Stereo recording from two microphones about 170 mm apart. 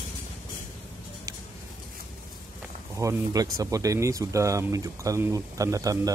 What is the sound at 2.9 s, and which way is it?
Speech, 20° right (ahead or behind).